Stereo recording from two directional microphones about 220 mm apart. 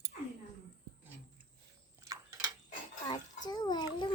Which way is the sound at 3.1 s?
20° left (ahead or behind).